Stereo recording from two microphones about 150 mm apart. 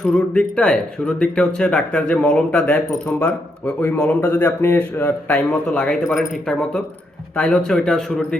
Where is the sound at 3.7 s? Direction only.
20° left (ahead or behind).